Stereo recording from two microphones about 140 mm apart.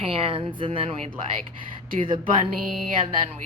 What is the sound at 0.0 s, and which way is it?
Speech, 45° right (ahead or behind).